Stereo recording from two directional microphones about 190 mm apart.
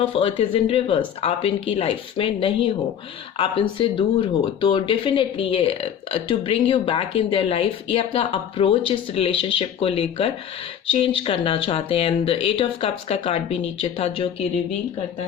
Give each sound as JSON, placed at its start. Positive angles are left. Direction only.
{"t": 0.0, "sound": "speech", "side_deg": 30}